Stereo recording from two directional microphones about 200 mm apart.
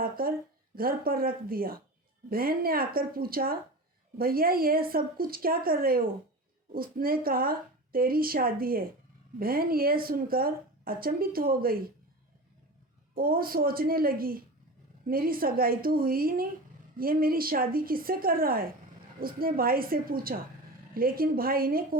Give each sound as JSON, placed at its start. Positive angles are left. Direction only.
{"t": 0.0, "sound": "a woman's voice", "side_deg": -45}
{"t": 13.1, "sound": "a woman's voice", "side_deg": -45}